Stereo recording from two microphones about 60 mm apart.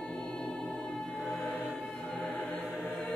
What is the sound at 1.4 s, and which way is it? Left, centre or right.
Music, left.